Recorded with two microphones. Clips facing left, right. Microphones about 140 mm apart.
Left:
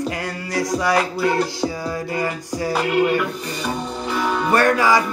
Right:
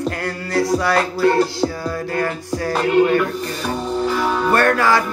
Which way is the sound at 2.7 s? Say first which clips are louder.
Right 4 dB; 5° left (ahead or behind).